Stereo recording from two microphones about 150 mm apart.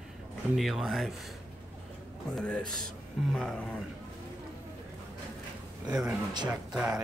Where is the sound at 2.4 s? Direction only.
5° left (ahead or behind).